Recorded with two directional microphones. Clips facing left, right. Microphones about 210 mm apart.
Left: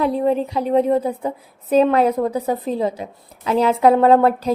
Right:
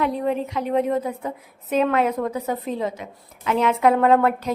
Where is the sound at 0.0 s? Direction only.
30° left (ahead or behind).